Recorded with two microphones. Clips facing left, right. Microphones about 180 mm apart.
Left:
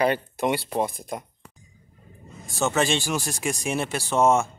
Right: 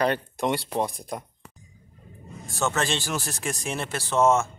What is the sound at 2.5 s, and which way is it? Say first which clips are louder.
Speech: left 3 dB; 15° left (ahead or behind).